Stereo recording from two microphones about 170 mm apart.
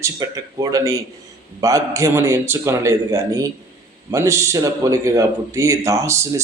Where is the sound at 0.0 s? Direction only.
20° right (ahead or behind).